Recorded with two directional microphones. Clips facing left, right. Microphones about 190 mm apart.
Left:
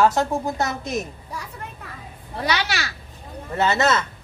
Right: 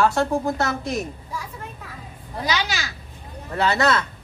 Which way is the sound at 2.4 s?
65° left (ahead or behind).